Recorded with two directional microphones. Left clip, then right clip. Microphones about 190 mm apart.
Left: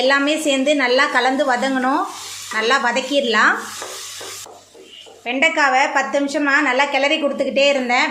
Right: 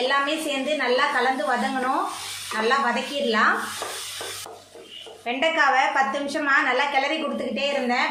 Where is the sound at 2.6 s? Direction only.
50° left (ahead or behind).